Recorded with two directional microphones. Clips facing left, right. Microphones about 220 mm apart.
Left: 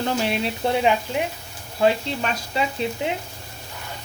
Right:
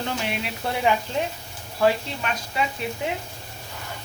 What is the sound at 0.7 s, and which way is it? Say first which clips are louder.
Speech: left 1 dB; 20° left (ahead or behind).